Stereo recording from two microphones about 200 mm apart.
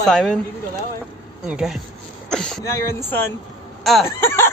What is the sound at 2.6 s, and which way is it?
Speech, 15° left (ahead or behind).